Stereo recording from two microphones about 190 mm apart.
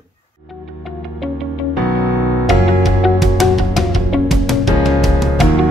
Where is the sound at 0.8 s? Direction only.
Centre (ahead or behind).